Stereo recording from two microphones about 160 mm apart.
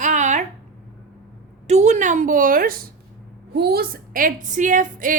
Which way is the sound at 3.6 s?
80° right.